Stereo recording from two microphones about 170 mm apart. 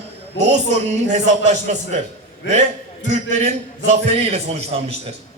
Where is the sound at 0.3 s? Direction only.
40° right (ahead or behind).